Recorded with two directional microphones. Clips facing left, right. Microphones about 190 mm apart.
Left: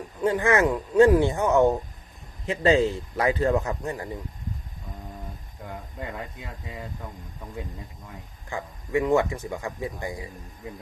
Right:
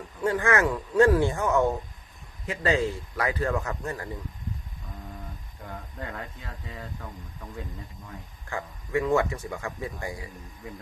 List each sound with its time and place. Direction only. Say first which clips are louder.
0.2 s speech: left 3 dB; 20° left (ahead or behind)
5.6 s speech: left 2 dB; 15° left (ahead or behind)
8.4 s speech: left 1 dB; 15° left (ahead or behind)